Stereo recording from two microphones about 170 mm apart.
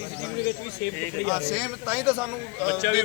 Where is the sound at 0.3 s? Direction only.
65° left (ahead or behind).